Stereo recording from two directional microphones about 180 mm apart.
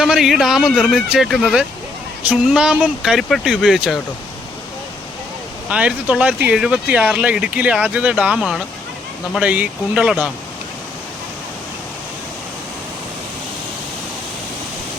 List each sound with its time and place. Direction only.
0.0 s speech: 5° right (ahead or behind)
5.6 s speech: 5° right (ahead or behind)